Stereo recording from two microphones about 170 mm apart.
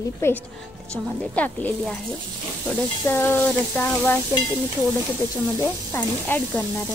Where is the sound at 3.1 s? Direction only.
15° left (ahead or behind).